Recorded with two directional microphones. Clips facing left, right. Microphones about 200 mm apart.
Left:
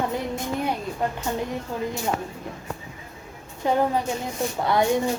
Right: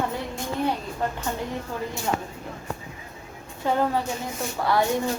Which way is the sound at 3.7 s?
15° left (ahead or behind).